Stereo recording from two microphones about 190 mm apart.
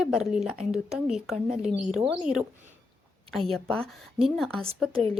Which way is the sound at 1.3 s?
35° right (ahead or behind).